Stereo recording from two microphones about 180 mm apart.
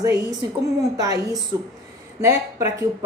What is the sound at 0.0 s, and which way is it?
Speech, 20° right (ahead or behind).